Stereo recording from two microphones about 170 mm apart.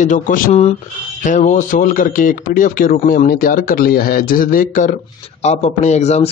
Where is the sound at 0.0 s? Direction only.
45° left (ahead or behind).